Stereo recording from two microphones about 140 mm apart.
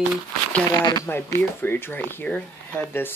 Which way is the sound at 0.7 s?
25° left (ahead or behind).